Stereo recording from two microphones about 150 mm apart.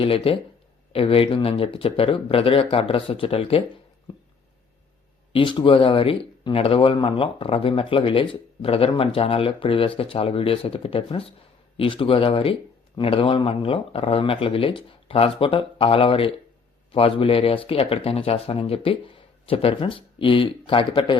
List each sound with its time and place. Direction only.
0.0 s speech: 40° left (ahead or behind)
5.3 s speech: 35° left (ahead or behind)